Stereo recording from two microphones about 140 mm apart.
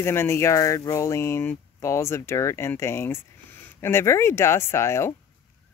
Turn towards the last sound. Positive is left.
turn(degrees=20)  # may be behind; listen again after turning